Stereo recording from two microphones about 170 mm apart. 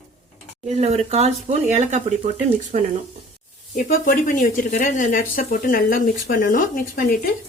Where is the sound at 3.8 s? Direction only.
55° left (ahead or behind).